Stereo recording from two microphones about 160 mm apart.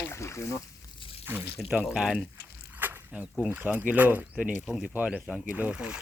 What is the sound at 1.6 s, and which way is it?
Speech, centre (ahead or behind).